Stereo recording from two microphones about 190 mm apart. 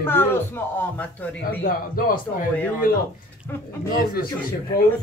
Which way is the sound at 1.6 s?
45° left (ahead or behind).